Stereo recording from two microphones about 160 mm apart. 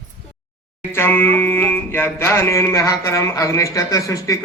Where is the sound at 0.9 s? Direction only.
15° left (ahead or behind).